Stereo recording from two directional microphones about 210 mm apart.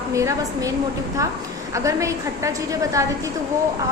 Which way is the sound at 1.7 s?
15° right (ahead or behind).